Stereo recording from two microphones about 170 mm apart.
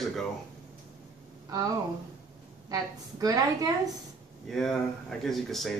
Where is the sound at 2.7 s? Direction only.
20° right (ahead or behind).